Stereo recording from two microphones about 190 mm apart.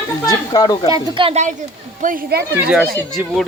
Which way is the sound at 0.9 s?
25° right (ahead or behind).